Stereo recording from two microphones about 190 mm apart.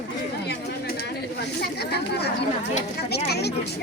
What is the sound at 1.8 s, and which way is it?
Speech, 60° left (ahead or behind).